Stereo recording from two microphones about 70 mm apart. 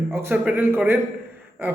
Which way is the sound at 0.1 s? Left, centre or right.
Right.